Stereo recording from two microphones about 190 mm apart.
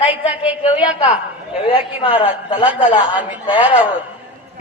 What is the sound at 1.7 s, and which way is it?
A man's voice, 30° left (ahead or behind).